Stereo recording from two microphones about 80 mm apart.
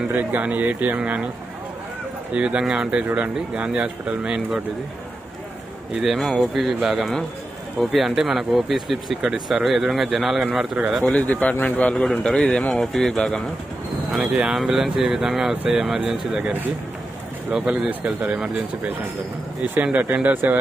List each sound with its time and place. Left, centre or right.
0.1 s speech: right
2.3 s speech: centre
5.9 s speech: centre
11.1 s a man's voice: centre
17.6 s speech: centre